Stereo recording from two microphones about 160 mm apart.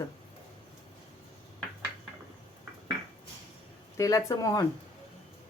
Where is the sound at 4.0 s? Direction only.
20° left (ahead or behind).